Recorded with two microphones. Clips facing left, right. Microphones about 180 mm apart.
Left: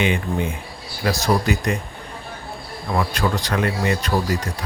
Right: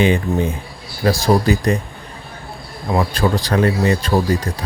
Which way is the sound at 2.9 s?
30° right (ahead or behind).